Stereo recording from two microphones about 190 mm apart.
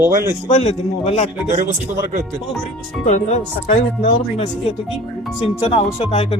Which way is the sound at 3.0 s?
40° left (ahead or behind).